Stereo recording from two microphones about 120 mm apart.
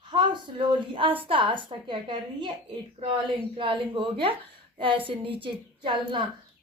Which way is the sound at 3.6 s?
45° right (ahead or behind).